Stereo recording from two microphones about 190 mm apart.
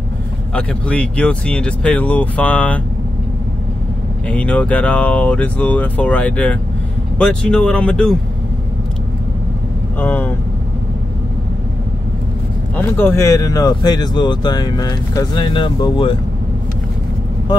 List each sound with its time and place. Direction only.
0.6 s speech: 5° left (ahead or behind)
4.3 s speech: 5° left (ahead or behind)
9.9 s speech: 10° left (ahead or behind)
12.7 s speech: 10° left (ahead or behind)